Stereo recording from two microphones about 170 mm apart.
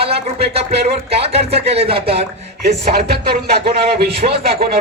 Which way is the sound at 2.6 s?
75° right (ahead or behind).